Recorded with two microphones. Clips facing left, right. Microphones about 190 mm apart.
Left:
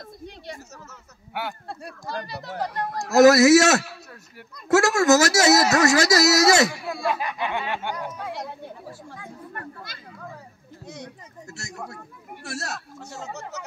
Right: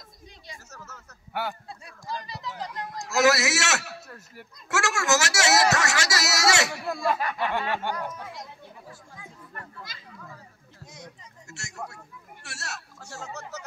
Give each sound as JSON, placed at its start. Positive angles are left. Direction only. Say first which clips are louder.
{"t": 0.8, "sound": "speech", "louder": "left 1 dB", "side_deg": 10}
{"t": 1.7, "sound": "speech", "louder": "left 3 dB", "side_deg": 70}
{"t": 3.1, "sound": "speech", "louder": "left 10 dB", "side_deg": 40}
{"t": 7.1, "sound": "speech", "louder": "even", "side_deg": 15}
{"t": 8.3, "sound": "speech", "louder": "left 8 dB", "side_deg": 70}
{"t": 12.4, "sound": "speech", "louder": "left 9 dB", "side_deg": 40}